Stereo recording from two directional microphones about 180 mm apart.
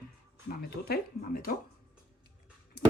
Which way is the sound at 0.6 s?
60° left (ahead or behind).